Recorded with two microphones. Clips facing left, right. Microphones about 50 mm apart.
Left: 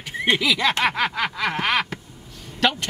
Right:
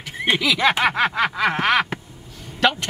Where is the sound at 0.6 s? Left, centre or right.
Centre.